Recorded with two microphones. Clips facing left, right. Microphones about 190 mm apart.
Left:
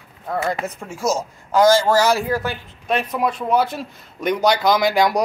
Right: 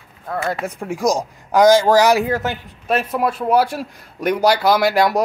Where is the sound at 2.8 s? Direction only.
5° right (ahead or behind).